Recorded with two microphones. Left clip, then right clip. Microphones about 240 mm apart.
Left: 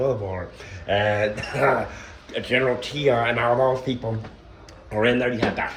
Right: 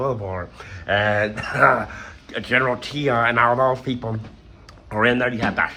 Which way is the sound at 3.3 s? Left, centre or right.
Right.